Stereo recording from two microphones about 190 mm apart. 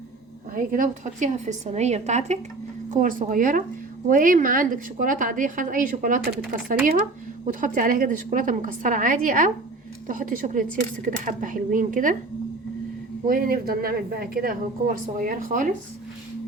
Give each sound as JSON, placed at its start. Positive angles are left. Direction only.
{"t": 0.5, "sound": "a woman's voice", "side_deg": -45}
{"t": 13.2, "sound": "speech", "side_deg": -50}